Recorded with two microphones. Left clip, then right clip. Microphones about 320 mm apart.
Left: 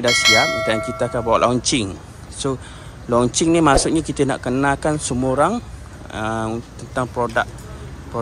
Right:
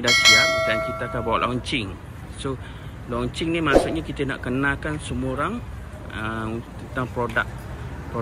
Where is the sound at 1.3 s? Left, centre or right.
Centre.